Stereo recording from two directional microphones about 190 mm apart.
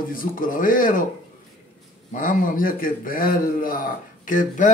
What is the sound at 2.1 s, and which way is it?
A man's voice, 45° left (ahead or behind).